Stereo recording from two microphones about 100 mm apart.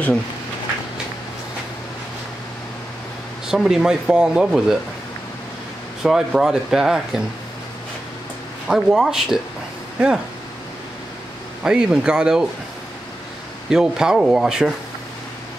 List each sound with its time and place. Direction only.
3.4 s speech: 5° right (ahead or behind)
6.0 s speech: 5° right (ahead or behind)
8.6 s speech: 5° right (ahead or behind)
11.6 s speech: 10° right (ahead or behind)
13.7 s speech: 5° right (ahead or behind)